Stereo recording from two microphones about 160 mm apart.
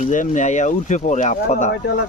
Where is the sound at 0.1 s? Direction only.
50° left (ahead or behind).